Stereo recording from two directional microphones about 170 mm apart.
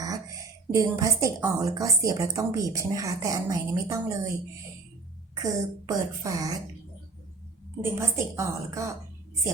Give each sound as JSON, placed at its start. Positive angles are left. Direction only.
{"t": 0.0, "sound": "a woman's voice", "side_deg": -20}
{"t": 5.3, "sound": "a woman's voice", "side_deg": -20}
{"t": 7.8, "sound": "a woman's voice", "side_deg": -15}